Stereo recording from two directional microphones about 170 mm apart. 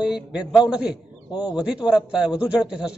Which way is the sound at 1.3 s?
25° left (ahead or behind).